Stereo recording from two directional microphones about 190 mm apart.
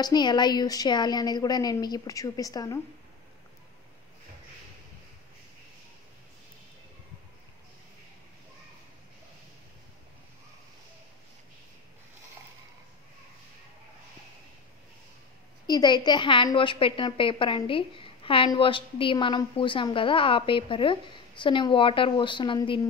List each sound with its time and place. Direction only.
0.0 s a woman's voice: 20° left (ahead or behind)
15.6 s a woman's voice: 20° left (ahead or behind)